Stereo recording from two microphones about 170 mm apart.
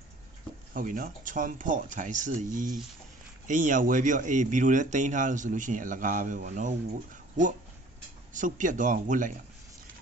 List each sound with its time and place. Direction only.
0.7 s speech: 50° right (ahead or behind)
8.3 s speech: 50° right (ahead or behind)